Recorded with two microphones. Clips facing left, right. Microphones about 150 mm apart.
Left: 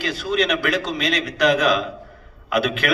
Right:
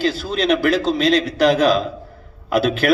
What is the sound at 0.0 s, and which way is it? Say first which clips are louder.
A man's voice: right 2 dB; 30° right (ahead or behind).